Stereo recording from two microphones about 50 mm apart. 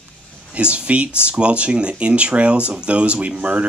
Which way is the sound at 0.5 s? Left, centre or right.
Right.